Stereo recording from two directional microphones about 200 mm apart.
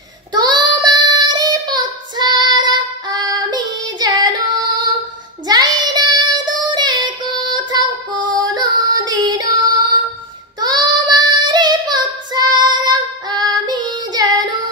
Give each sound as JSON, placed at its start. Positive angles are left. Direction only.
{"t": 0.3, "sound": "child singing", "side_deg": -20}
{"t": 10.6, "sound": "child singing", "side_deg": -20}